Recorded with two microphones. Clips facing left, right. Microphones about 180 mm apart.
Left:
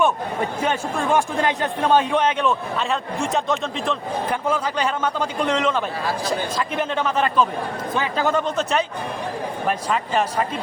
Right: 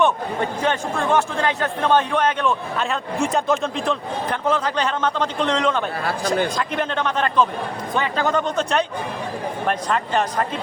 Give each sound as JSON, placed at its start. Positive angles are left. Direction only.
{"t": 0.6, "sound": "speech", "side_deg": 5}
{"t": 2.7, "sound": "a man's voice", "side_deg": 0}